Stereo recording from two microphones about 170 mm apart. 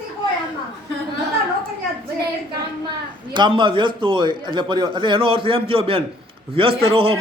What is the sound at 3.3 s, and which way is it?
A man's voice, 30° right (ahead or behind).